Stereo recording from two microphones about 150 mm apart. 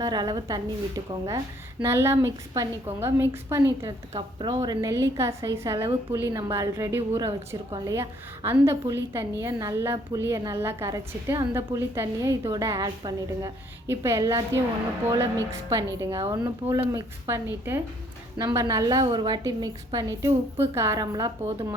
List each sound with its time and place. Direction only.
0.0 s a woman's voice: 25° right (ahead or behind)